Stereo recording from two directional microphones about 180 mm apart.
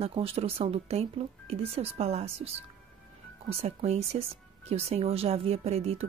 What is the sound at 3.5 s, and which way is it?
Speech, 35° right (ahead or behind).